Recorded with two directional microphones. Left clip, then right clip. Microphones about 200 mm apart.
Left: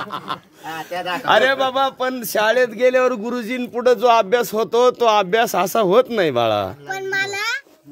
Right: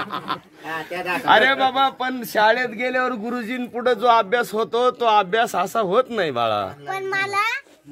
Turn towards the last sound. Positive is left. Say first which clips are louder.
# left 1 dB
turn(degrees=-5)  # may be behind; listen again after turning